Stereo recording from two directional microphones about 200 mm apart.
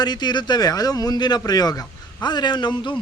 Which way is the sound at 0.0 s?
20° left (ahead or behind).